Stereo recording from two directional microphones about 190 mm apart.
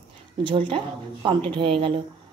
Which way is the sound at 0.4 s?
25° right (ahead or behind).